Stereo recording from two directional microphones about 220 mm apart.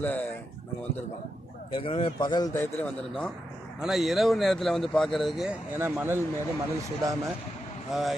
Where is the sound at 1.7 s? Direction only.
25° left (ahead or behind); by 6.2 s 10° right (ahead or behind).